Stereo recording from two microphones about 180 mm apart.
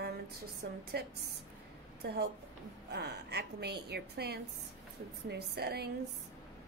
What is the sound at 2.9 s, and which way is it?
A woman's voice, 70° right (ahead or behind).